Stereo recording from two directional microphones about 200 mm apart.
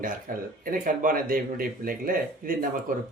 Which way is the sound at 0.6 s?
45° right (ahead or behind).